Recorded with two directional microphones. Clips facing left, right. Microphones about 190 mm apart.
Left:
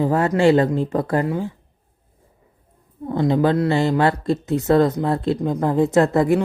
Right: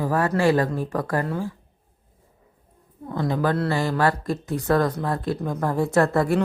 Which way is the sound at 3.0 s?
25° left (ahead or behind).